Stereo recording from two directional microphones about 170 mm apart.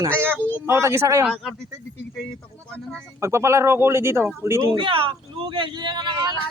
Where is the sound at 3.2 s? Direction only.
15° right (ahead or behind).